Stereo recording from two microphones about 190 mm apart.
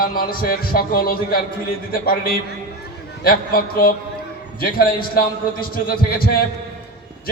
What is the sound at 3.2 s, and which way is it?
A man's voice, 50° left (ahead or behind).